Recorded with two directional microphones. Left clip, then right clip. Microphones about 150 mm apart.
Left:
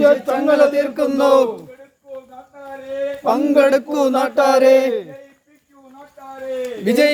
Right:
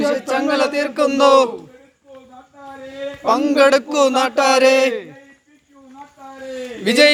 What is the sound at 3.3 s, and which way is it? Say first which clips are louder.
Speech: right 1 dB; 40° left (ahead or behind).